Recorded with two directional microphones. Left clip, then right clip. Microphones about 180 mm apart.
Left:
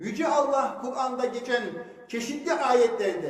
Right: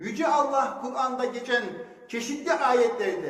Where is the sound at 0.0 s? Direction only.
15° left (ahead or behind).